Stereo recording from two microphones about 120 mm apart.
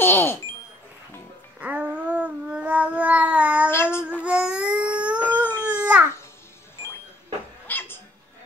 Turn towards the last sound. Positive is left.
turn(degrees=20)  # may be behind; listen again after turning